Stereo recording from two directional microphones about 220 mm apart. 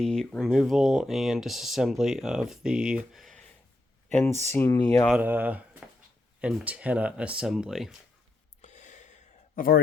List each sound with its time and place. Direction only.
0.0 s speech: centre (ahead or behind)
5.0 s speech: 5° right (ahead or behind)
8.6 s a sound: 35° left (ahead or behind)